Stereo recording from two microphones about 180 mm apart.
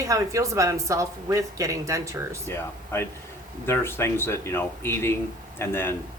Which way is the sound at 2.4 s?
15° left (ahead or behind).